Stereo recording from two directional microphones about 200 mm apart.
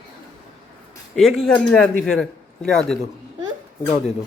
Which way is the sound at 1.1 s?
Centre (ahead or behind).